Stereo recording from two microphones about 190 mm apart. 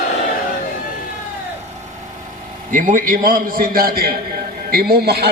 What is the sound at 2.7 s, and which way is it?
A man's voice, 45° right (ahead or behind).